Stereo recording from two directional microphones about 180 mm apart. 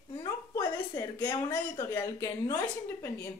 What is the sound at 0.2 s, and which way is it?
A woman's voice, 20° left (ahead or behind).